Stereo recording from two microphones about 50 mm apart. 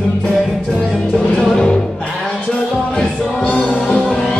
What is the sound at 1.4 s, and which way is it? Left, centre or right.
Music, centre.